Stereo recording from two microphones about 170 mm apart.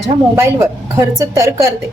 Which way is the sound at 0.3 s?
15° right (ahead or behind).